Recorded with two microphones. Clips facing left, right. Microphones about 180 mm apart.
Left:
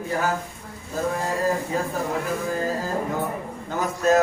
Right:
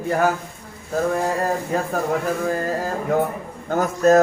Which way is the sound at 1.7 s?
60° right (ahead or behind).